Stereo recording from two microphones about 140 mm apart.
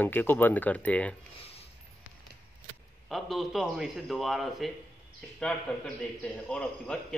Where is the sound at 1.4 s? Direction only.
45° left (ahead or behind).